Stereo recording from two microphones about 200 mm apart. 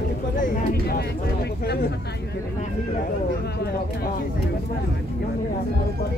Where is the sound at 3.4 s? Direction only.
50° left (ahead or behind).